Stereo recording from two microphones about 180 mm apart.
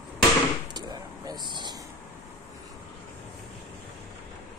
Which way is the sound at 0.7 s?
25° right (ahead or behind).